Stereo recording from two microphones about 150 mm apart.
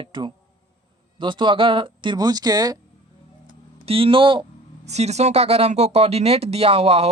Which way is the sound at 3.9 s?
35° right (ahead or behind).